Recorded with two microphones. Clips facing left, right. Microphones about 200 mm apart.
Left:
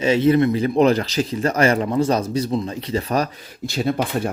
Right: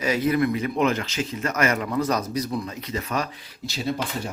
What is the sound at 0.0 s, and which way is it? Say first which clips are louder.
Speech: left 6 dB; 25° left (ahead or behind).